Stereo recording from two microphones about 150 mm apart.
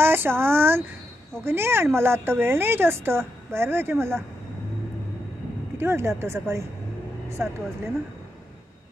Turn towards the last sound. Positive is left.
turn(degrees=-20)  # may be behind; listen again after turning